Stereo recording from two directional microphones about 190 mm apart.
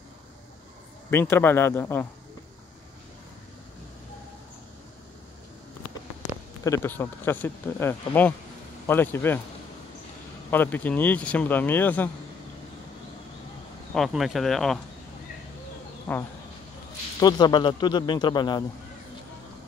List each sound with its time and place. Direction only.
1.1 s speech: 10° left (ahead or behind)
6.6 s speech: 15° left (ahead or behind)
10.5 s speech: 10° left (ahead or behind)
13.9 s speech: centre (ahead or behind)
16.1 s speech: 10° left (ahead or behind)
17.2 s speech: 20° left (ahead or behind)